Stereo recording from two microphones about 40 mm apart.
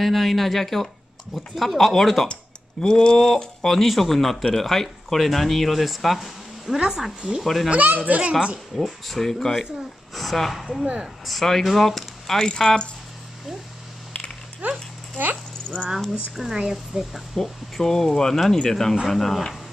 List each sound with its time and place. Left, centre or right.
0.0 s speech: centre
2.8 s speech: centre
3.6 s speech: centre
6.8 s speech: centre
7.4 s speech: centre
7.7 s speech: right
8.2 s speech: right
8.7 s speech: centre
12.4 s speech: centre
14.6 s speech: right
15.1 s a sound: right
16.3 s speech: centre
17.4 s speech: centre